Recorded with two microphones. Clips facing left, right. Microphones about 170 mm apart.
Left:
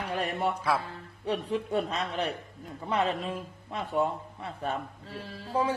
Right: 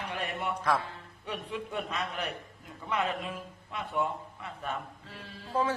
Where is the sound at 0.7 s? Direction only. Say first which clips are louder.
Right 1 dB; 5° left (ahead or behind).